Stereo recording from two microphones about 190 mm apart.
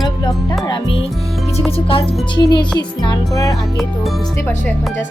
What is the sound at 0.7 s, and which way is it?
Music, 30° left (ahead or behind).